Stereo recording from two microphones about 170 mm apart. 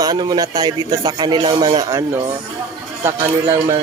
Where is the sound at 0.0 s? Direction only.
25° right (ahead or behind).